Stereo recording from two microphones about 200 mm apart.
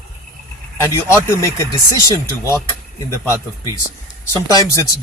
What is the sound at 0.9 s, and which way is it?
Speech, 15° left (ahead or behind).